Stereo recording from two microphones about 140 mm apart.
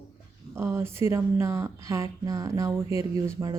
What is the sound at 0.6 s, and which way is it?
Speech, 20° right (ahead or behind).